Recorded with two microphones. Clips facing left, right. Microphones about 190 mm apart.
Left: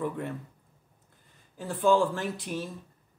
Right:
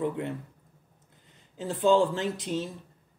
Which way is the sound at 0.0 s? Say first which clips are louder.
Right 2 dB; 20° right (ahead or behind).